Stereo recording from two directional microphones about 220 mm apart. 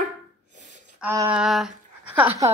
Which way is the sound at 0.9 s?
10° right (ahead or behind).